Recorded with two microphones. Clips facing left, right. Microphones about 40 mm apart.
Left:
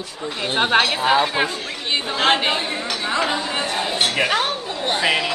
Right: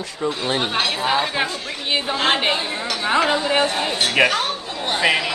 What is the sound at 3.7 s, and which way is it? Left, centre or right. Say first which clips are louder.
A woman's voice: right 1 dB; centre.